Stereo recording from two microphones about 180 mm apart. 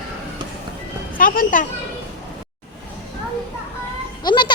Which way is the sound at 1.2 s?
50° left (ahead or behind).